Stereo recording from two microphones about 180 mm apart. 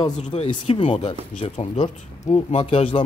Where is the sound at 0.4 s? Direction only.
35° left (ahead or behind).